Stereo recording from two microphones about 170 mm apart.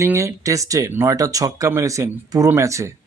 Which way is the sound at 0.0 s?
15° right (ahead or behind).